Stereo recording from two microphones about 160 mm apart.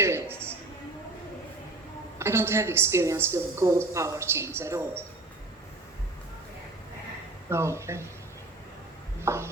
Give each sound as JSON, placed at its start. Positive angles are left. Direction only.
{"t": 0.0, "sound": "music", "side_deg": -15}
{"t": 2.1, "sound": "a woman's voice", "side_deg": -15}
{"t": 7.5, "sound": "a woman's voice", "side_deg": -15}
{"t": 9.2, "sound": "a woman's voice", "side_deg": -15}